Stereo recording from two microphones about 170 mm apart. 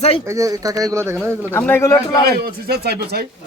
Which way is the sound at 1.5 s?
10° left (ahead or behind).